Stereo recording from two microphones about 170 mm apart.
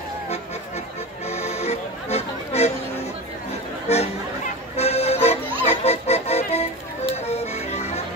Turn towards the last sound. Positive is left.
turn(degrees=40)  # may be behind; listen again after turning